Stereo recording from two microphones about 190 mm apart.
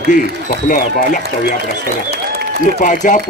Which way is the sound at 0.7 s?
40° left (ahead or behind).